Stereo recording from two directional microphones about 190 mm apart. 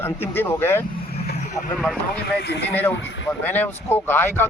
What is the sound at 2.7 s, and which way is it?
Speech, 10° left (ahead or behind).